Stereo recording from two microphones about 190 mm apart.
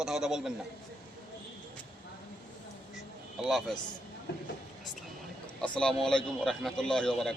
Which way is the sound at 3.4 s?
Centre (ahead or behind).